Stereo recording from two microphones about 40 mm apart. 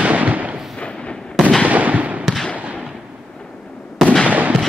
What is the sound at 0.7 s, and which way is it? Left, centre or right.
Fireworks, left.